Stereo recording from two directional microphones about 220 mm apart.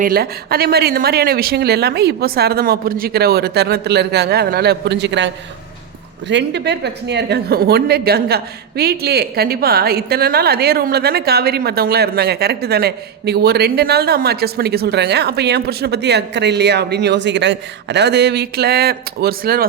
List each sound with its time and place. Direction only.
0.0 s speech: 45° right (ahead or behind)